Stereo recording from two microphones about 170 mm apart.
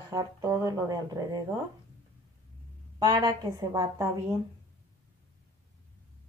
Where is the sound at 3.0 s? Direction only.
25° right (ahead or behind).